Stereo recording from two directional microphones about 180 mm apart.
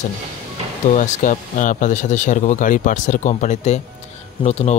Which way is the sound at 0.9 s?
45° left (ahead or behind).